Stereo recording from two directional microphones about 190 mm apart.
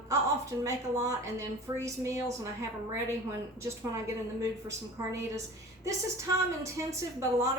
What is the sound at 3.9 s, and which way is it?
A woman's voice, 15° right (ahead or behind).